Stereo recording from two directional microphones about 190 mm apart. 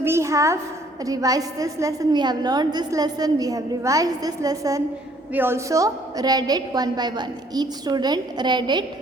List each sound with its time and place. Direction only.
0.0 s a woman's voice: 15° right (ahead or behind)